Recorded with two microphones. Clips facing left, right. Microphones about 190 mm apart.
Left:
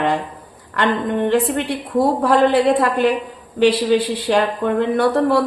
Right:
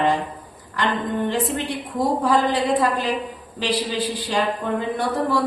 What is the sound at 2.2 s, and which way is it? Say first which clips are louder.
Speech: left 5 dB; 60° left (ahead or behind).